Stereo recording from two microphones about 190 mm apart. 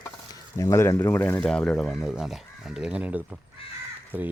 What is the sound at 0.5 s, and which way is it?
Speech, 15° left (ahead or behind).